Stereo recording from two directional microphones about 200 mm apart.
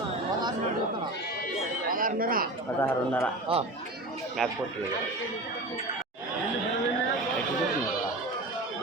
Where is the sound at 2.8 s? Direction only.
5° left (ahead or behind).